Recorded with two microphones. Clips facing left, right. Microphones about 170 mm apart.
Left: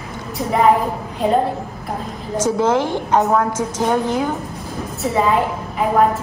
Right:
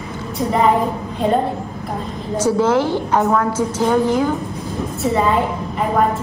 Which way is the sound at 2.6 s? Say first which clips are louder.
Right 1 dB; 15° left (ahead or behind).